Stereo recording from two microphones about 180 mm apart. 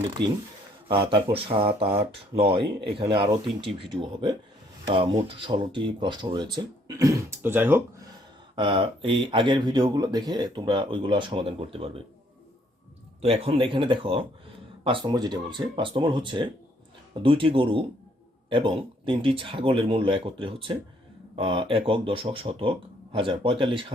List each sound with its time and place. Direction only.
1.1 s speech: 30° right (ahead or behind); by 8.0 s 10° right (ahead or behind)
8.5 s speech: 30° right (ahead or behind)
13.2 s speech: 35° right (ahead or behind)